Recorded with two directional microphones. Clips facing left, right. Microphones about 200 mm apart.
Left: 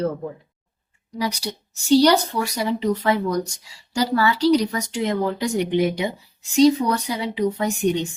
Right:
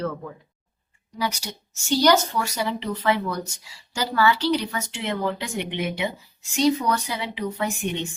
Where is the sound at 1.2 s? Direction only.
35° left (ahead or behind).